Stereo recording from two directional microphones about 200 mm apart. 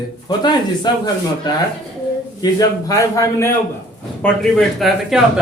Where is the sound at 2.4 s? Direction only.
20° left (ahead or behind).